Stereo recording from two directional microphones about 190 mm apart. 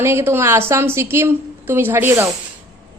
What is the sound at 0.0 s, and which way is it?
A woman's voice, 15° right (ahead or behind).